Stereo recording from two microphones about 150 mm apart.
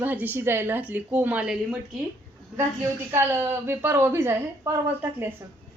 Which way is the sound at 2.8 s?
15° right (ahead or behind).